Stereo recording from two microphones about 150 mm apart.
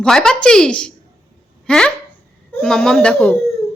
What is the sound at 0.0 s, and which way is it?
A child's voice, 5° left (ahead or behind).